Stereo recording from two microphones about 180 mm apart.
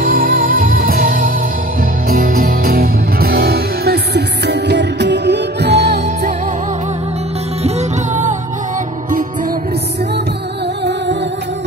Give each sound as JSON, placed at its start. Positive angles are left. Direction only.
{"t": 0.0, "sound": "music", "side_deg": -50}